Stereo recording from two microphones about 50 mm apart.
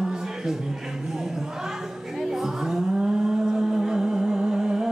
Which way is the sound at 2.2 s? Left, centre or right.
Centre.